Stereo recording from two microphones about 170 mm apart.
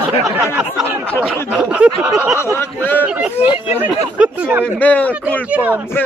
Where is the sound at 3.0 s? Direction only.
5° right (ahead or behind).